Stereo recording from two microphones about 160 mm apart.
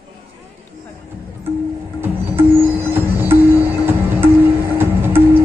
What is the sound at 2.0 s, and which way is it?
Music, 15° right (ahead or behind).